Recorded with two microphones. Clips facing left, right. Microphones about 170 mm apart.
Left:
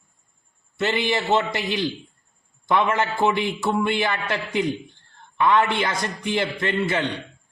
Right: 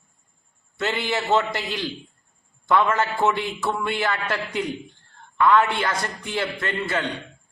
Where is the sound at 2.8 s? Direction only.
15° left (ahead or behind).